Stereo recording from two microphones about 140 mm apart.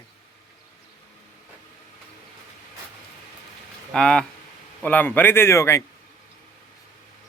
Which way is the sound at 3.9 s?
5° left (ahead or behind).